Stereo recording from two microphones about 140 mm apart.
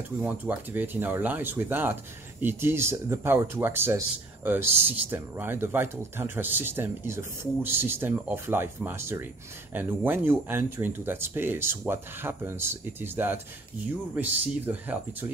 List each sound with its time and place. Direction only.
0.2 s speech: 15° right (ahead or behind)